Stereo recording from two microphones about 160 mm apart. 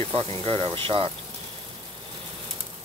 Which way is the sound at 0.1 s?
35° right (ahead or behind).